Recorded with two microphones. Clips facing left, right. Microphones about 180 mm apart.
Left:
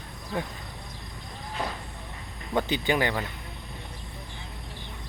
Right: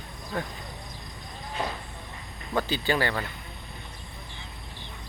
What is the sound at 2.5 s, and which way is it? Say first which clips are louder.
Speech: left 1 dB; 20° left (ahead or behind).